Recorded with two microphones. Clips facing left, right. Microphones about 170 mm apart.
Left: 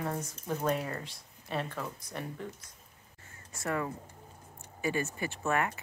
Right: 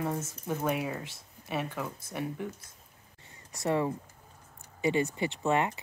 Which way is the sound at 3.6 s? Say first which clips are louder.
Right 5 dB; 20° right (ahead or behind).